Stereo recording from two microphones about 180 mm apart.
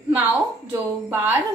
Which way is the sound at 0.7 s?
10° right (ahead or behind).